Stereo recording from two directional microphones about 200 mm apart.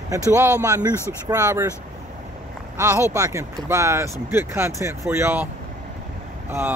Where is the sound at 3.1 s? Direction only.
15° right (ahead or behind).